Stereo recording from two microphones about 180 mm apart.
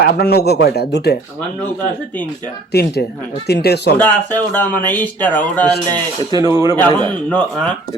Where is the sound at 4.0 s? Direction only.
10° left (ahead or behind).